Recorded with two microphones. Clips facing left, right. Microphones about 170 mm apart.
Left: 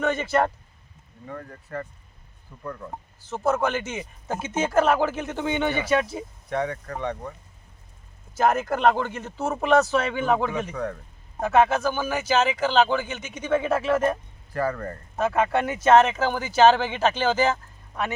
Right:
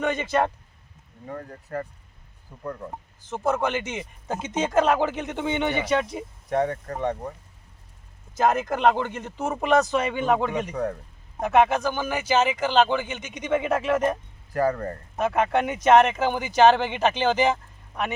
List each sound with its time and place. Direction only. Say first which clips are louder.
0.0 s speech: left 1 dB; 15° right (ahead or behind)
1.4 s speech: right 2 dB; 30° right (ahead or behind)
6.5 s speech: right 3 dB; 45° right (ahead or behind)
8.4 s speech: even; 10° right (ahead or behind)